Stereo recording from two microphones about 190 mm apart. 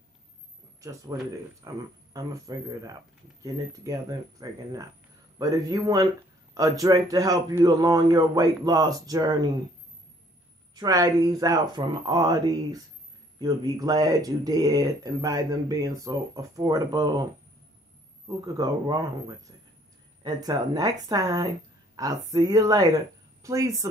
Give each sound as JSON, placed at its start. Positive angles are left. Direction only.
{"t": 0.7, "sound": "speech", "side_deg": -15}
{"t": 10.7, "sound": "speech", "side_deg": -20}